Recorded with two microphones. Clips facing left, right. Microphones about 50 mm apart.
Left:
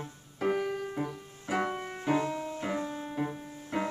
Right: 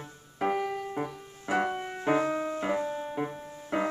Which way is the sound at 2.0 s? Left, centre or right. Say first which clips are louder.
Right 3 dB; right.